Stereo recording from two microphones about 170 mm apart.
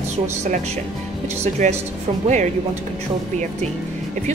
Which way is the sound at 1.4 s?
40° right (ahead or behind).